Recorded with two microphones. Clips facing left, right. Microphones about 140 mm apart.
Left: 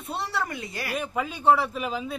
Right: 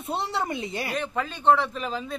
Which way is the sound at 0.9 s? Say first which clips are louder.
Left 4 dB; 10° left (ahead or behind).